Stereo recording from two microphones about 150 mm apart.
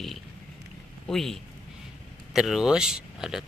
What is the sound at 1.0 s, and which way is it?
Speech, centre (ahead or behind).